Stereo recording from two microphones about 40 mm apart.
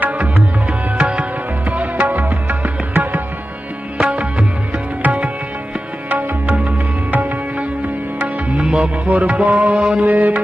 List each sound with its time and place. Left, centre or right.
0.2 s music: right
1.7 s music: right
4.0 s music: right
6.4 s music: right
8.6 s music: right
9.0 s music: right
10.0 s music: right